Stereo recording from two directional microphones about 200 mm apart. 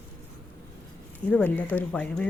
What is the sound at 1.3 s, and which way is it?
Speech, 5° left (ahead or behind).